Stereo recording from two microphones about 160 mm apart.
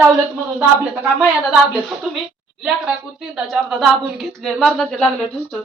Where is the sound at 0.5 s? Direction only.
5° right (ahead or behind).